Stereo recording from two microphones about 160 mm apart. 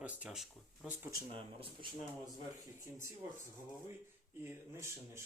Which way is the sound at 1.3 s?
35° right (ahead or behind).